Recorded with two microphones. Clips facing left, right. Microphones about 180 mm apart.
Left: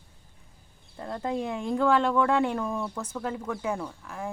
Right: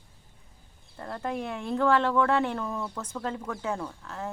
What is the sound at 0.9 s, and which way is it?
Speech, 15° left (ahead or behind).